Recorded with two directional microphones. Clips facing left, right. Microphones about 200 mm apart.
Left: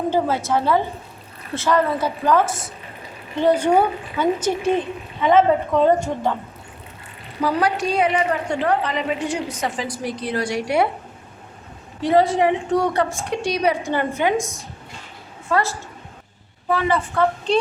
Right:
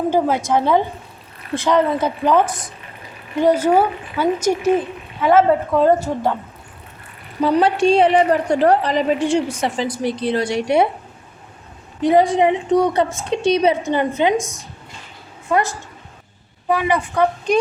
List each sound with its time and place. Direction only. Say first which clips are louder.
0.1 s a woman's voice: right 2 dB; 15° right (ahead or behind)
7.4 s a woman's voice: right 6 dB; 25° right (ahead or behind)
11.9 s a woman's voice: right 3 dB; 15° right (ahead or behind)
14.3 s a woman's voice: right 1 dB; centre (ahead or behind)
15.4 s a woman's voice: right 2 dB; 15° right (ahead or behind)